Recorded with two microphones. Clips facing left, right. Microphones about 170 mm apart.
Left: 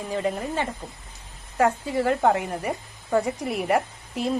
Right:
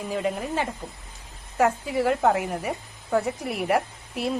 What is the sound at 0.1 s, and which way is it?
Speech, centre (ahead or behind).